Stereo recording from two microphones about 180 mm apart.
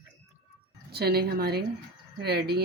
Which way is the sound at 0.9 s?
60° right (ahead or behind).